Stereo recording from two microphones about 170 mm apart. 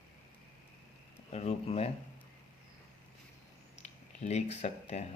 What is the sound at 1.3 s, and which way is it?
Speech, 40° left (ahead or behind).